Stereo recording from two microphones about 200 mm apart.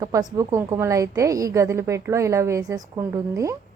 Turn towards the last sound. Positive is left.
turn(degrees=-15)  # may be behind; listen again after turning